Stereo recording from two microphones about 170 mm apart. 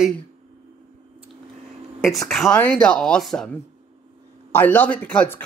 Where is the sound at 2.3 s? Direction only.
5° left (ahead or behind).